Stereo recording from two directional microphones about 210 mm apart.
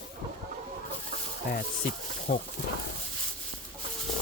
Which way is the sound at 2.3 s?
35° left (ahead or behind).